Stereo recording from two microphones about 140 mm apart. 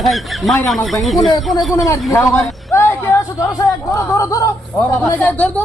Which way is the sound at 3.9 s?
25° left (ahead or behind).